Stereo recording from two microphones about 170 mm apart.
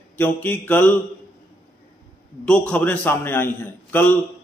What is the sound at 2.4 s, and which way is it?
A man's voice, 5° left (ahead or behind).